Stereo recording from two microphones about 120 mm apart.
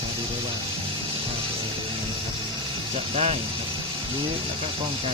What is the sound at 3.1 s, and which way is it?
Speech, 55° right (ahead or behind).